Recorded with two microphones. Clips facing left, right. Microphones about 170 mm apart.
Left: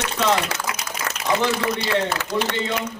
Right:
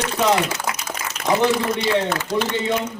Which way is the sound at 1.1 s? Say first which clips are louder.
Left 2 dB; 70° left (ahead or behind).